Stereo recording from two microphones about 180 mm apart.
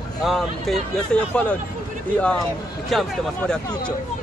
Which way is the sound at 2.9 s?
Centre (ahead or behind).